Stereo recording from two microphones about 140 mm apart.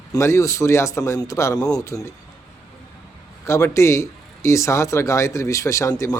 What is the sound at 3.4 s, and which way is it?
Speech, 20° left (ahead or behind).